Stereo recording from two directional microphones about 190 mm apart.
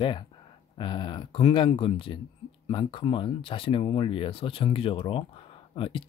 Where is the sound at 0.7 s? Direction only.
25° left (ahead or behind).